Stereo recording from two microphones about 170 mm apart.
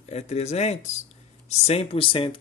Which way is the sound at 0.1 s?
40° left (ahead or behind).